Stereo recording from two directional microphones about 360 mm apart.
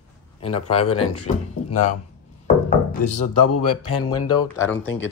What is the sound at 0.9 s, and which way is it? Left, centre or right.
Speech, left.